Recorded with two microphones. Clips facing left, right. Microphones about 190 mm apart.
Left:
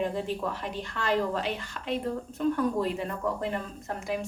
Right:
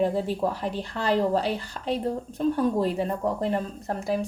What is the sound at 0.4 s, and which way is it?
A woman's voice, 30° right (ahead or behind).